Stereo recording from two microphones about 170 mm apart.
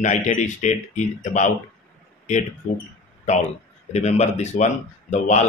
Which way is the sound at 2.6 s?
45° left (ahead or behind).